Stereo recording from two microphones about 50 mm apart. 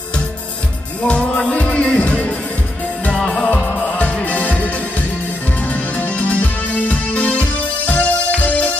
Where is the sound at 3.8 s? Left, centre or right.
Left.